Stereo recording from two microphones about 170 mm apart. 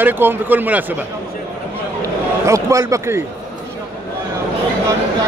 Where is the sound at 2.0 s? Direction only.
20° right (ahead or behind).